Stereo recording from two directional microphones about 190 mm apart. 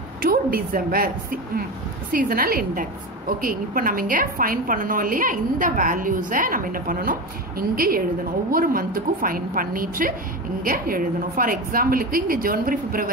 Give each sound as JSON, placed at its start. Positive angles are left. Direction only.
{"t": 0.2, "sound": "a woman's voice", "side_deg": -50}